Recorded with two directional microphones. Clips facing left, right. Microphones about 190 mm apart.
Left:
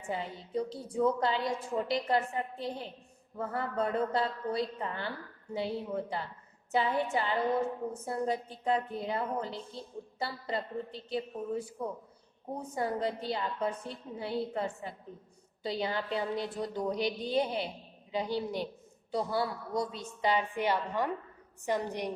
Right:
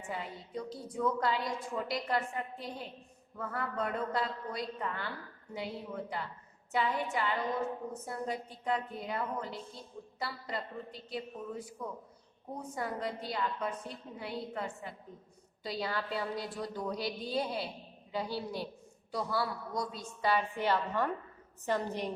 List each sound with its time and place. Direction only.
0.1 s a woman's voice: 30° left (ahead or behind)